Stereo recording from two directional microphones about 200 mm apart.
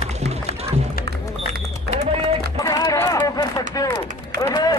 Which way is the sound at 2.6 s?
20° left (ahead or behind).